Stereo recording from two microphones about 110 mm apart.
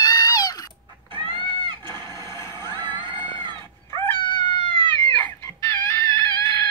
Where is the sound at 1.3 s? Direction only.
50° left (ahead or behind).